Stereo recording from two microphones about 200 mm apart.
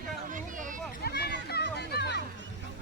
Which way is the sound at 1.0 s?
55° left (ahead or behind).